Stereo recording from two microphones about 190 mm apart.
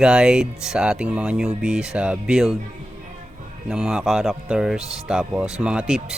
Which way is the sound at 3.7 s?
5° right (ahead or behind).